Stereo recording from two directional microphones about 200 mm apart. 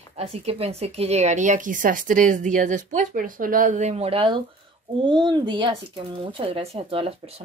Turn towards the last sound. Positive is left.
turn(degrees=-30)  # may be behind; listen again after turning